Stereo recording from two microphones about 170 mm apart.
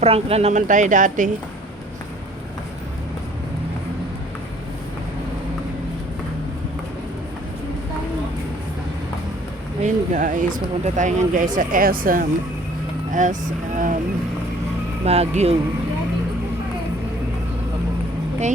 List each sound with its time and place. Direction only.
0.0 s speech: 35° right (ahead or behind)
9.8 s speech: 50° right (ahead or behind)
15.0 s speech: 40° right (ahead or behind)